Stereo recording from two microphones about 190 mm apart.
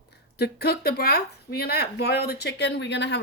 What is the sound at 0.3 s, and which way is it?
Speech, 55° left (ahead or behind).